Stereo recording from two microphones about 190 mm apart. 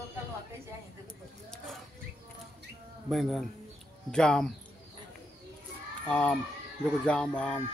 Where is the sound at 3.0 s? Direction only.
Centre (ahead or behind).